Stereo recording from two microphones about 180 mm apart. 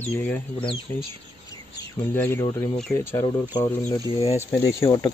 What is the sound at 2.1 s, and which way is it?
Speech, 10° left (ahead or behind).